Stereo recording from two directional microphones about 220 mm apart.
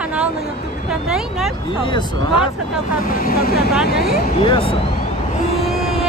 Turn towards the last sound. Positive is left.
turn(degrees=25)  # may be behind; listen again after turning